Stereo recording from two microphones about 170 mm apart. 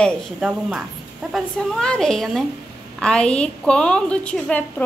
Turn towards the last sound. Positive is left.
turn(degrees=5)  # may be behind; listen again after turning